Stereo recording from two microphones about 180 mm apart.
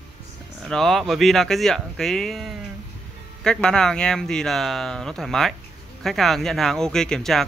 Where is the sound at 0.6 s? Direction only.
Centre (ahead or behind).